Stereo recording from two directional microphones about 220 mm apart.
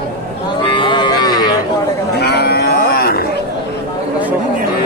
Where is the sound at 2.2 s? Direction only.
45° left (ahead or behind).